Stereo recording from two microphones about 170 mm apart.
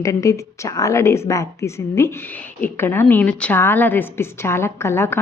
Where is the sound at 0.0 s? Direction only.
20° left (ahead or behind).